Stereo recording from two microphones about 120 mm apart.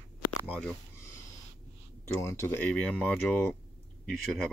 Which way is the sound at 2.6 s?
10° left (ahead or behind).